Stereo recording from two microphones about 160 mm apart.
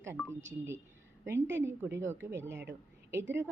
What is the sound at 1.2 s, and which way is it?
Speech, 15° right (ahead or behind).